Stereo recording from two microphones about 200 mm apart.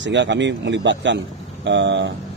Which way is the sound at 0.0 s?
65° right (ahead or behind).